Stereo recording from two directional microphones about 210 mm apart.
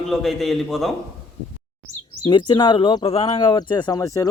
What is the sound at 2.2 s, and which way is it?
Speech, 20° left (ahead or behind).